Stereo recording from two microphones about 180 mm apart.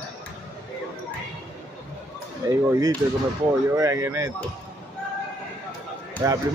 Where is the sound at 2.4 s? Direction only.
20° right (ahead or behind).